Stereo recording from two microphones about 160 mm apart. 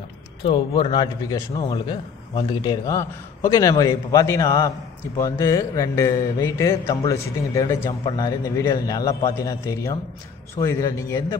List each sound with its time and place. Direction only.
0.4 s a man's voice: 30° left (ahead or behind)